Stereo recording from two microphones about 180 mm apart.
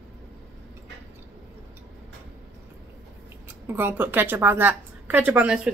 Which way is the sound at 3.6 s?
10° right (ahead or behind).